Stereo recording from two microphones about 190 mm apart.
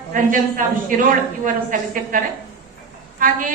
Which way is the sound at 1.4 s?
45° right (ahead or behind).